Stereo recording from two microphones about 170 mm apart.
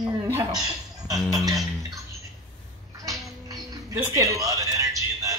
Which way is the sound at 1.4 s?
20° right (ahead or behind).